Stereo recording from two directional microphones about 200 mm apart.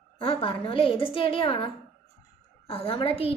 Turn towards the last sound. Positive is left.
turn(degrees=30)  # may be behind; listen again after turning